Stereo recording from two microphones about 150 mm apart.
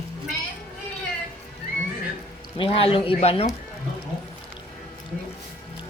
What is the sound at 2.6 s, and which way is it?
Speech, 40° left (ahead or behind).